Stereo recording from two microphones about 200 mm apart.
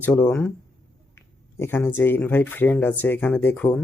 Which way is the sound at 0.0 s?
5° left (ahead or behind).